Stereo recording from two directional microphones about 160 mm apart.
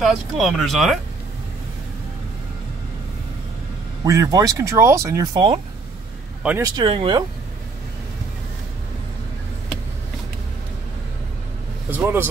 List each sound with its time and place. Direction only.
0.0 s speech: centre (ahead or behind)
4.0 s speech: 20° right (ahead or behind)
6.6 s speech: 30° right (ahead or behind)
11.9 s speech: 10° right (ahead or behind)